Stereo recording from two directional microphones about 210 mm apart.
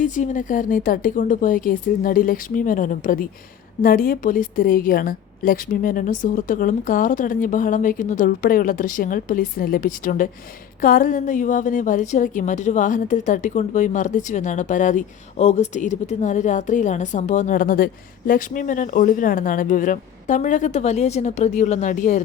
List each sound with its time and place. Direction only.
0.0 s a woman's voice: 35° left (ahead or behind)